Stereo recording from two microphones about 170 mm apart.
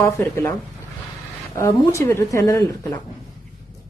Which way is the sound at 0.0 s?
15° left (ahead or behind).